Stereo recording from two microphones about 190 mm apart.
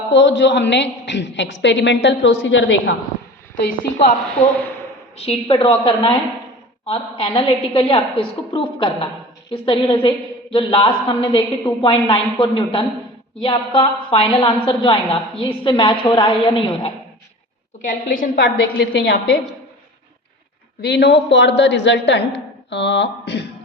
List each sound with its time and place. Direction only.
0.1 s a woman's voice: 70° left (ahead or behind)
5.1 s a woman's voice: 30° left (ahead or behind)
17.8 s a woman's voice: 45° left (ahead or behind)
18.5 s a woman's voice: 60° left (ahead or behind)
20.8 s a woman's voice: 60° left (ahead or behind)
22.7 s a sound: 65° left (ahead or behind)